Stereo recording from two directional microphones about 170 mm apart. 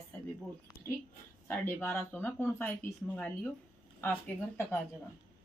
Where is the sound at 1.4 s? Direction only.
10° left (ahead or behind).